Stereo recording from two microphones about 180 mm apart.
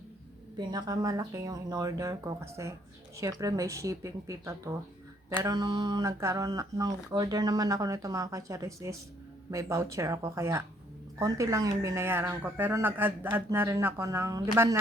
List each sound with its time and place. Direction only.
0.5 s speech: 20° right (ahead or behind)